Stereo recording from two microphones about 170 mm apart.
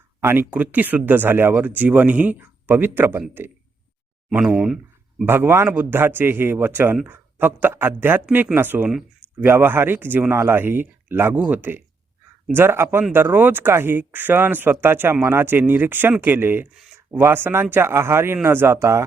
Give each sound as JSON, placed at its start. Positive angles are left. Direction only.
{"t": 0.2, "sound": "speech", "side_deg": -15}